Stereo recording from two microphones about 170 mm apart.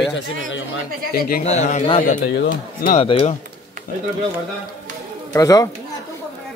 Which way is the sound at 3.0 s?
35° left (ahead or behind).